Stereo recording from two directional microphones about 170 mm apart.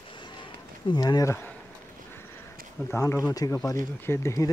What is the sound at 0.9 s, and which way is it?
Speech, 25° left (ahead or behind).